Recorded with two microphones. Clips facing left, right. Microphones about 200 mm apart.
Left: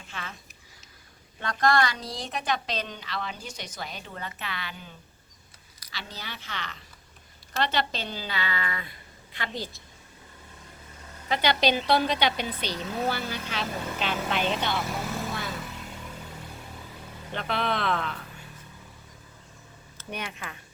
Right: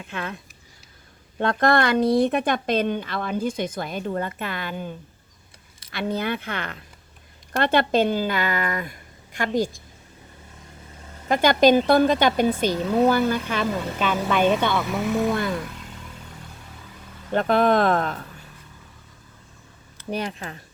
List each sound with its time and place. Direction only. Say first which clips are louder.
0.0 s speech: right 9 dB; 60° right (ahead or behind)
1.4 s a woman's voice: right 5 dB; 55° right (ahead or behind)
11.3 s a woman's voice: right 8 dB; 45° right (ahead or behind)
17.3 s a woman's voice: right 11 dB; 45° right (ahead or behind)
20.1 s speech: right 8 dB; 35° right (ahead or behind)